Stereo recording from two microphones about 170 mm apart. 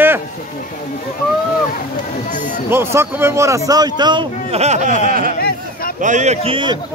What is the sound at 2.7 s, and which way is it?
Speech, 15° right (ahead or behind).